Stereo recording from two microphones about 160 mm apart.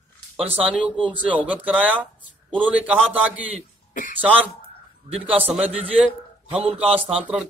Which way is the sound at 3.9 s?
55° left (ahead or behind).